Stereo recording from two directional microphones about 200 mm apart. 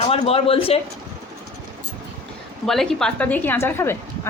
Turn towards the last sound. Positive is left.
turn(degrees=10)  # may be behind; listen again after turning